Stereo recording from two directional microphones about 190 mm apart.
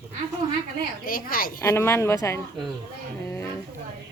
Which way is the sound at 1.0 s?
50° left (ahead or behind).